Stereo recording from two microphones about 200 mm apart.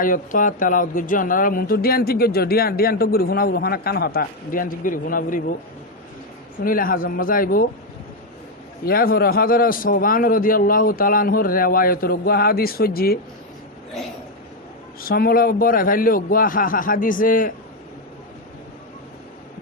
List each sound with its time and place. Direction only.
0.0 s speech: 40° left (ahead or behind)
6.7 s speech: 45° left (ahead or behind)
8.8 s speech: 45° left (ahead or behind)
15.0 s speech: 50° left (ahead or behind)